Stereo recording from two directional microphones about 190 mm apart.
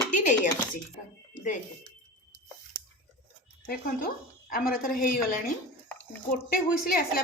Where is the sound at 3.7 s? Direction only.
50° left (ahead or behind).